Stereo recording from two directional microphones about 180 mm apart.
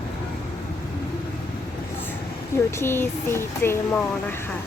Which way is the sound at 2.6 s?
15° left (ahead or behind).